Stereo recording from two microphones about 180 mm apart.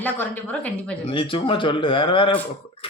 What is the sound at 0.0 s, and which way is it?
Speech, 10° left (ahead or behind).